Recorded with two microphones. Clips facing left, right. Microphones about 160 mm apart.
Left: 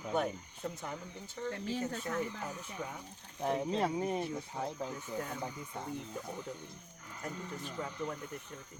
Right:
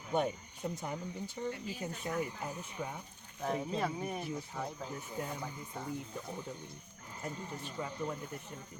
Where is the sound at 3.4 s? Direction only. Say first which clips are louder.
Left 2 dB; 25° left (ahead or behind).